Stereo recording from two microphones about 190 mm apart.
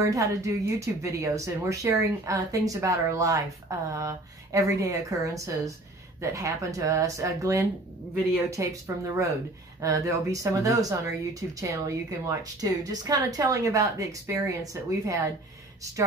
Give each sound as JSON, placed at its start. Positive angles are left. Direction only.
{"t": 0.0, "sound": "speech", "side_deg": -15}